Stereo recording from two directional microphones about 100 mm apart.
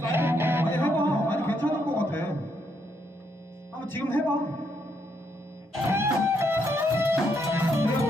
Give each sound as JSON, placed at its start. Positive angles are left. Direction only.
{"t": 0.1, "sound": "music", "side_deg": -25}
{"t": 0.7, "sound": "a sound", "side_deg": 20}
{"t": 3.8, "sound": "a man's voice", "side_deg": 20}
{"t": 5.9, "sound": "music", "side_deg": -25}